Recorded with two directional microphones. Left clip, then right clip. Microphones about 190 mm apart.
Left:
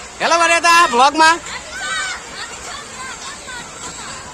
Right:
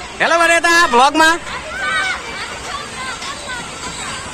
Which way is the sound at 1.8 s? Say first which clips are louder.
Right 4 dB; 55° left (ahead or behind).